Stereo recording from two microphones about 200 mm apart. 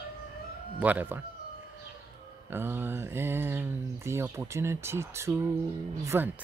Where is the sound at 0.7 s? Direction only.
10° right (ahead or behind).